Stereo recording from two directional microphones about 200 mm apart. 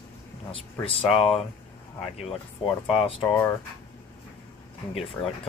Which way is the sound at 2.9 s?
30° left (ahead or behind).